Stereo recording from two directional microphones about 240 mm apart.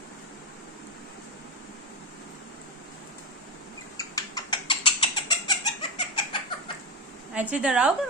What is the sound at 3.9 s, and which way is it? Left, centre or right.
Squawk, centre.